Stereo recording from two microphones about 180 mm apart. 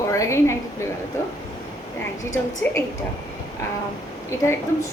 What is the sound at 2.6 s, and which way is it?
Speech, 10° left (ahead or behind).